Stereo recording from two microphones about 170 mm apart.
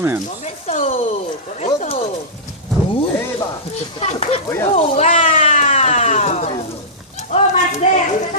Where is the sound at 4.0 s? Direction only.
40° left (ahead or behind).